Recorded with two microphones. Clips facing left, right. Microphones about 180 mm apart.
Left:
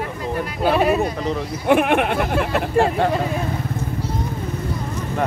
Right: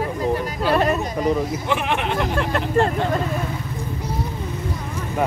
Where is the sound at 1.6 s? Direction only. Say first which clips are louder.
Left 6 dB; 55° left (ahead or behind).